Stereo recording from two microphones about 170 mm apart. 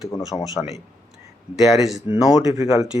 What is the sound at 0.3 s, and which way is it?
Speech, 30° left (ahead or behind).